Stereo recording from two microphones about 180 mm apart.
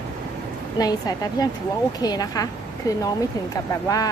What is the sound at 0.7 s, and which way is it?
Speech, 20° left (ahead or behind).